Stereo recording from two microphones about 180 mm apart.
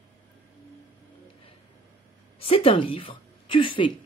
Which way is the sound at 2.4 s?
30° left (ahead or behind).